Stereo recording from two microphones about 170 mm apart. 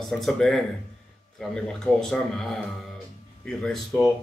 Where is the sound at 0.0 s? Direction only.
Centre (ahead or behind).